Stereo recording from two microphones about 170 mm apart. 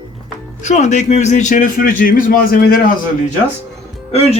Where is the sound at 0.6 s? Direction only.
45° left (ahead or behind).